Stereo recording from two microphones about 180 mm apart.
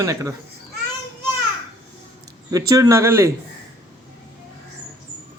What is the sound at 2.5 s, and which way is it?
Speech, 20° right (ahead or behind).